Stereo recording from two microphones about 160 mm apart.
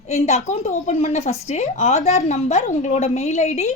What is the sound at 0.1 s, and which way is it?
A woman's voice, 45° left (ahead or behind).